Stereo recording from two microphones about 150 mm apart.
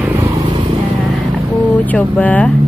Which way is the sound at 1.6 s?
10° left (ahead or behind).